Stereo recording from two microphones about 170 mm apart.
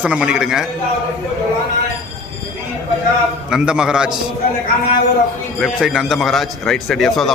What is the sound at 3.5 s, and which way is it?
Speech, 5° right (ahead or behind).